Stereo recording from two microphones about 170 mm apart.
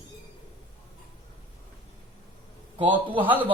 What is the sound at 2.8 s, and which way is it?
Speech, 30° right (ahead or behind).